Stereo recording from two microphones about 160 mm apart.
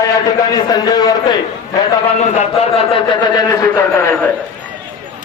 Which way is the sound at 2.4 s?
40° left (ahead or behind).